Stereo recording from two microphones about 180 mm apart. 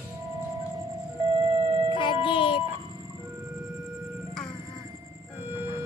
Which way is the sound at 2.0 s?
25° left (ahead or behind).